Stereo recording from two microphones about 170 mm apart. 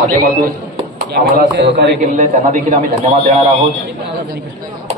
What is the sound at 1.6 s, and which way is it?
Speech, 90° right.